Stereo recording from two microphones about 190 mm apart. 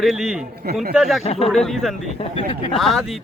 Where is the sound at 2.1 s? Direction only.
25° left (ahead or behind).